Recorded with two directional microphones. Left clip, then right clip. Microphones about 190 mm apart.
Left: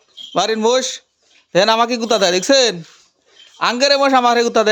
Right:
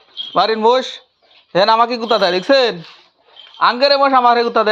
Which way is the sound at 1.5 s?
40° left (ahead or behind).